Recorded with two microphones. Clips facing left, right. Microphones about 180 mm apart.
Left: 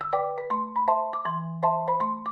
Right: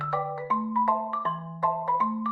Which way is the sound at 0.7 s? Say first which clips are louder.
Left 4 dB; 35° left (ahead or behind).